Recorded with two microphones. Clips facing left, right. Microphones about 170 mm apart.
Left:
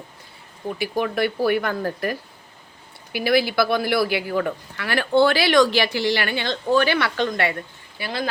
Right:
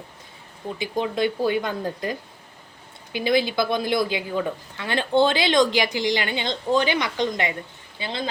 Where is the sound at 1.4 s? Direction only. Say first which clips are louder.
Left 2 dB; 20° right (ahead or behind).